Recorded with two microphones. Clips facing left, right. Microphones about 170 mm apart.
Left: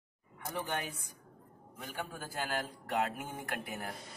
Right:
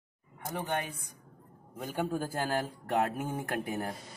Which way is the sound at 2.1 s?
40° right (ahead or behind).